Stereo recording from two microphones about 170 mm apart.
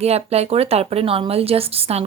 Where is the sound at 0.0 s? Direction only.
40° right (ahead or behind).